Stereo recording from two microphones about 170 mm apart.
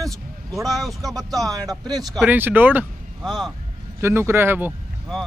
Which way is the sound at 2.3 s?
10° right (ahead or behind).